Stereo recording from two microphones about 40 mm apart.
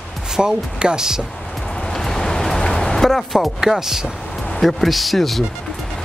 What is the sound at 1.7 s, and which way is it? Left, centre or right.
Vehicle, centre.